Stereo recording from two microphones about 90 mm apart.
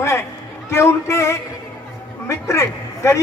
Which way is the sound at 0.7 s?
30° left (ahead or behind).